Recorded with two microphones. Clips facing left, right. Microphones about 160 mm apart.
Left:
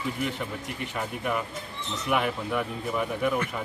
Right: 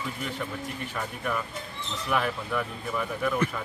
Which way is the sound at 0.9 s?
15° left (ahead or behind).